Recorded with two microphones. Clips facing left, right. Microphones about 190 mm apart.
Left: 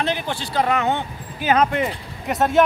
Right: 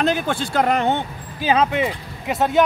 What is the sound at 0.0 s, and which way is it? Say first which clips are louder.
Speech: right 4 dB; 50° right (ahead or behind).